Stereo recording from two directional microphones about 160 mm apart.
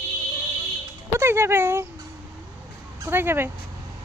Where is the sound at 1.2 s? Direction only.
15° right (ahead or behind).